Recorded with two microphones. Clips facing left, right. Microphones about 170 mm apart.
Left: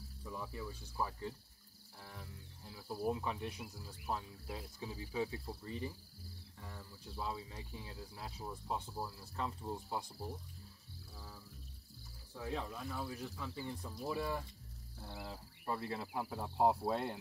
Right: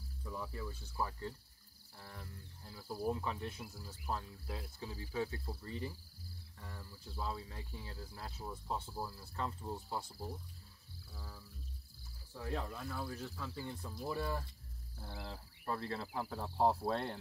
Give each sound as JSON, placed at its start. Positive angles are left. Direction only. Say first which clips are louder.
{"t": 0.2, "sound": "speech", "louder": "right 1 dB", "side_deg": 5}
{"t": 3.7, "sound": "speech", "louder": "even", "side_deg": 15}
{"t": 11.1, "sound": "a sound", "louder": "right 1 dB", "side_deg": 5}
{"t": 12.4, "sound": "speech", "louder": "even", "side_deg": 5}